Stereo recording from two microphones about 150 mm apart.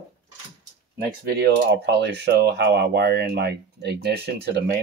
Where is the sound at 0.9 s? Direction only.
90° right.